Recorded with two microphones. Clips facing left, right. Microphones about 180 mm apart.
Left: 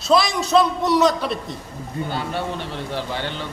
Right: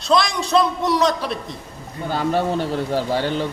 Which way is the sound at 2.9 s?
40° right (ahead or behind).